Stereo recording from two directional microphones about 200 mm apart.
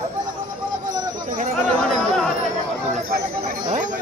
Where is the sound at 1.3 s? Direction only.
40° right (ahead or behind).